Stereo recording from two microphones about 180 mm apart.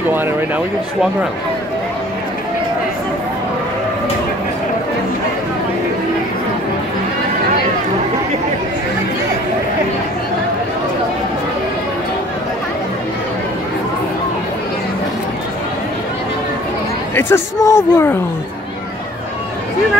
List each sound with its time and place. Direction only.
17.1 s speech: 15° left (ahead or behind)